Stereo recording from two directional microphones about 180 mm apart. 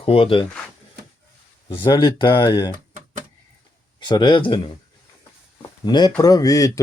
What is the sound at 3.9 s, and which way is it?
Speech, 25° left (ahead or behind).